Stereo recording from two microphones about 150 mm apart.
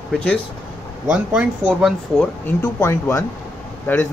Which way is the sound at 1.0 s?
5° right (ahead or behind).